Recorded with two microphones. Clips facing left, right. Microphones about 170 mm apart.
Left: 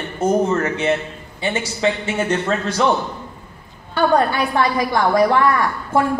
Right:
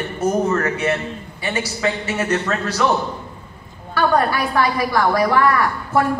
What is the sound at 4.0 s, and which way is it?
A man's voice, 25° left (ahead or behind).